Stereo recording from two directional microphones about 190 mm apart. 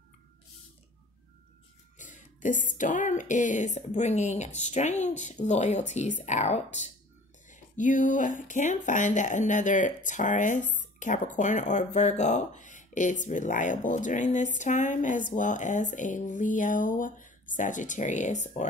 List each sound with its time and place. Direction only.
2.0 s speech: 40° left (ahead or behind)